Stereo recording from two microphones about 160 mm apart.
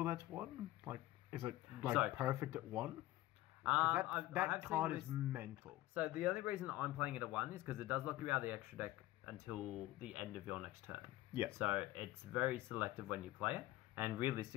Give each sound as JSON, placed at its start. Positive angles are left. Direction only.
{"t": 0.0, "sound": "speech", "side_deg": -15}
{"t": 3.6, "sound": "speech", "side_deg": -10}